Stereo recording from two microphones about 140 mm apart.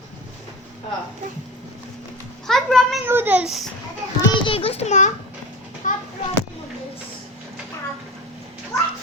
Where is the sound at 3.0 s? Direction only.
15° right (ahead or behind).